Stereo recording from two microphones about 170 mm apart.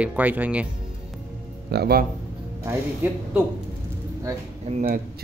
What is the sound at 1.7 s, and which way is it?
Speech, 65° right (ahead or behind).